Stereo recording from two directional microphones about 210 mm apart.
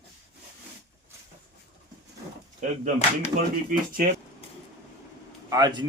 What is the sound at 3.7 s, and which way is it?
Speech, 40° right (ahead or behind).